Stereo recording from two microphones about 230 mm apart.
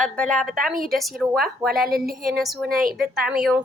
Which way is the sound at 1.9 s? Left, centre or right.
Right.